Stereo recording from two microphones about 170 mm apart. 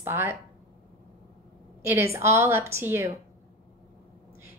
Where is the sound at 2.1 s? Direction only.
15° right (ahead or behind).